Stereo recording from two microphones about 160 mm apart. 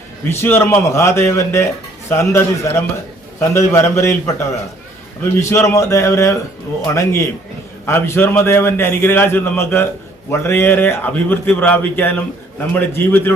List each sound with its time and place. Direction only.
0.3 s speech: 15° left (ahead or behind)